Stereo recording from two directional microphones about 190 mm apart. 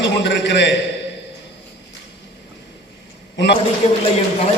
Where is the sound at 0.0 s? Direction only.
70° left (ahead or behind).